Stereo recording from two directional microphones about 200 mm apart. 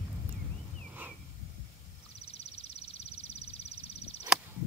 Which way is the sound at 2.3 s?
30° left (ahead or behind).